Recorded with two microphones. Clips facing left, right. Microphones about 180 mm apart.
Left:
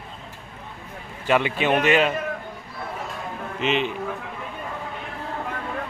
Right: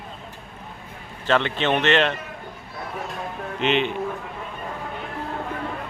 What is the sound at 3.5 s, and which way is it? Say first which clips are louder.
Speech: right 2 dB; centre (ahead or behind).